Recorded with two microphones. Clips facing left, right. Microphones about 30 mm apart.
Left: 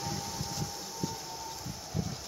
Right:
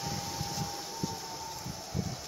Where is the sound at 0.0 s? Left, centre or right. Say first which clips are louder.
Even; centre.